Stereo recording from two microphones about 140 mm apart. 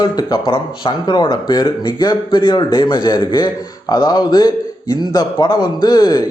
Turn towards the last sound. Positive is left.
turn(degrees=25)  # may be behind; listen again after turning